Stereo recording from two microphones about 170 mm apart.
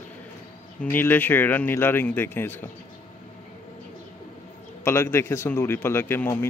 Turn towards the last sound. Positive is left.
turn(degrees=15)  # may be behind; listen again after turning